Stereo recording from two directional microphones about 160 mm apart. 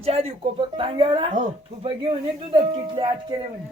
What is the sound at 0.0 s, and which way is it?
A woman's voice, 40° right (ahead or behind).